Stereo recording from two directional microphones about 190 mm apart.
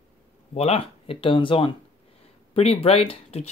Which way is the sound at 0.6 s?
30° left (ahead or behind).